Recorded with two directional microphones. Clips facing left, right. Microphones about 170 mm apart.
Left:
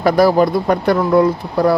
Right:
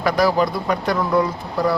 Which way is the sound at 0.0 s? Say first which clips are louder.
Left 6 dB; 35° left (ahead or behind).